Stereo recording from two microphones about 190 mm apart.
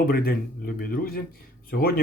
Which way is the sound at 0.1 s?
50° left (ahead or behind).